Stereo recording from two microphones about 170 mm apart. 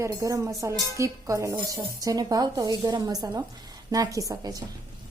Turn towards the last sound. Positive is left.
turn(degrees=-20)  # may be behind; listen again after turning